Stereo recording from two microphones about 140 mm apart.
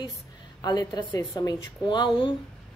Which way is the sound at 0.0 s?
30° left (ahead or behind).